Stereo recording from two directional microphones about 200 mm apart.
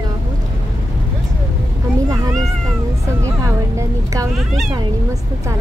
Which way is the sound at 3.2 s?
15° right (ahead or behind).